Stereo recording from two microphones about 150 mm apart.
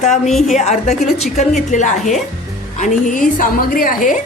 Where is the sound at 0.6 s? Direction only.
50° left (ahead or behind).